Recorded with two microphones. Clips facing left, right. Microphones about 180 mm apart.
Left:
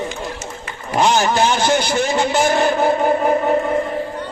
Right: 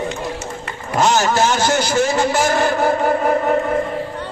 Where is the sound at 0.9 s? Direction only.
15° left (ahead or behind).